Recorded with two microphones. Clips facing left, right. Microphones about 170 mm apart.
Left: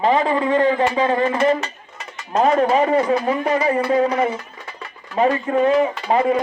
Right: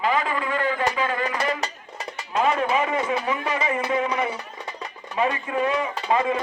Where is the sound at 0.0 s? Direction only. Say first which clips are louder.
Left 7 dB; 30° left (ahead or behind).